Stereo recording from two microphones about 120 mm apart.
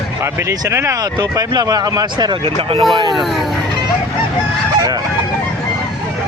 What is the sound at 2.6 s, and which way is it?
Speech, 50° right (ahead or behind).